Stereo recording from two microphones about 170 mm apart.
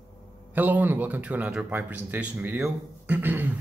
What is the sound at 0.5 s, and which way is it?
Speech, 10° right (ahead or behind).